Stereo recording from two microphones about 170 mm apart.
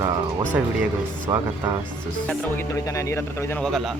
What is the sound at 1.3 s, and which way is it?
Speech, 20° right (ahead or behind).